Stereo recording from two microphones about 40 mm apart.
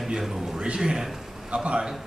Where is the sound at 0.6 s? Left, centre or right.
Right.